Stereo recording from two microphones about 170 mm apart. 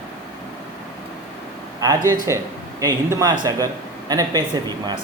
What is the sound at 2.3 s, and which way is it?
Speech, 20° right (ahead or behind).